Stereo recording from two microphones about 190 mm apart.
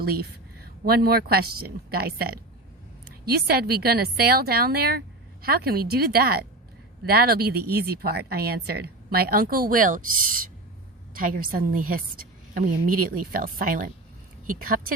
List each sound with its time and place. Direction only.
0.0 s a woman's voice: 55° right (ahead or behind)